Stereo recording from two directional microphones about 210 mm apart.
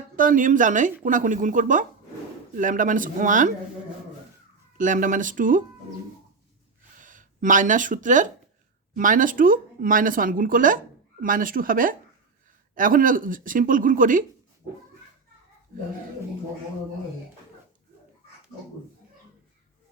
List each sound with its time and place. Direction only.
0.2 s speech: 40° right (ahead or behind)
4.8 s speech: 40° right (ahead or behind)
6.9 s speech: 40° right (ahead or behind)